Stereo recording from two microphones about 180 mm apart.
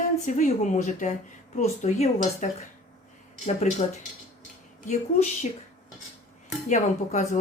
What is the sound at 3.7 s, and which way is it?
Speech, 40° left (ahead or behind).